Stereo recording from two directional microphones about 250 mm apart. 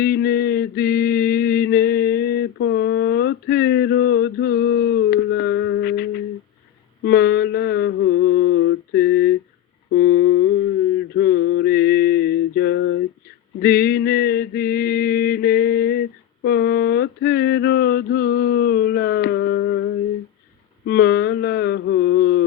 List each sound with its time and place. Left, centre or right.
0.0 s mantra: left
9.9 s humming: left
11.1 s a sound: left
13.6 s mantra: left